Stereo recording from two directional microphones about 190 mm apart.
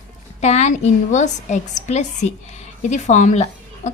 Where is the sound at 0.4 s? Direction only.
35° left (ahead or behind).